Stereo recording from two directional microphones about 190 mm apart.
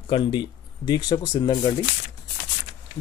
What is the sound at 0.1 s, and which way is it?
Speech, 25° left (ahead or behind).